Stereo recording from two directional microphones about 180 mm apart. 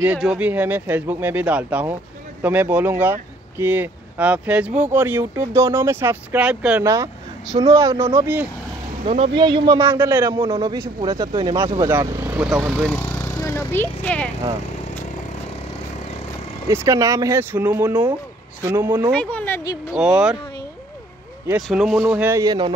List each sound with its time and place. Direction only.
0.0 s speech: 5° right (ahead or behind)
9.0 s speech: 40° right (ahead or behind)
9.3 s speech: 25° right (ahead or behind)
9.8 s speech: 15° right (ahead or behind)
11.9 s speech: 10° right (ahead or behind)
12.8 s a sound: 10° left (ahead or behind)
14.0 s a woman's voice: 5° left (ahead or behind)
16.6 s speech: 15° right (ahead or behind)
19.1 s a woman's voice: 10° left (ahead or behind)
19.9 s speech: 5° right (ahead or behind)
21.6 s speech: centre (ahead or behind)
22.0 s speech: 10° right (ahead or behind)